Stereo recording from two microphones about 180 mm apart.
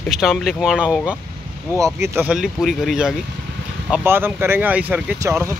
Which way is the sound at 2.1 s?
5° right (ahead or behind).